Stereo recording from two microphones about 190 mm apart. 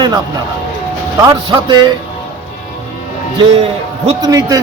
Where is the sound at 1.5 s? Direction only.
25° right (ahead or behind).